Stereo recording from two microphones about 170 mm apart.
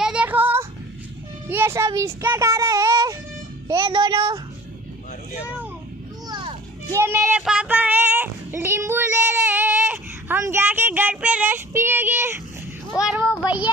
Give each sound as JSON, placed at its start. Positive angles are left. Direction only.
{"t": 0.0, "sound": "child singing", "side_deg": -5}
{"t": 1.5, "sound": "a child's voice", "side_deg": -15}
{"t": 6.3, "sound": "children playing", "side_deg": -25}
{"t": 7.0, "sound": "child singing", "side_deg": -15}